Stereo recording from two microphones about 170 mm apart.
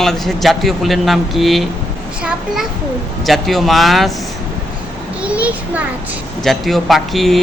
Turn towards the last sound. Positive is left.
turn(degrees=0)  # may be behind; listen again after turning